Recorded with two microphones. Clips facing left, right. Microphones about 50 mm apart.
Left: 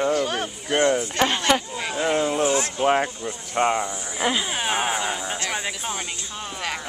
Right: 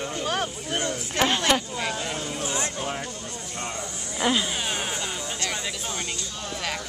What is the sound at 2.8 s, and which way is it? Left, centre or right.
Speech, left.